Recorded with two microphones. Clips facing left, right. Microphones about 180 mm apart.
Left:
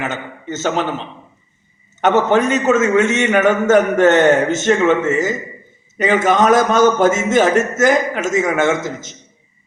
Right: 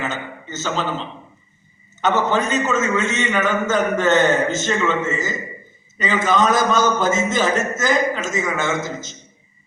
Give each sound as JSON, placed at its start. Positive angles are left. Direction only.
{"t": 0.0, "sound": "a man's voice", "side_deg": 70}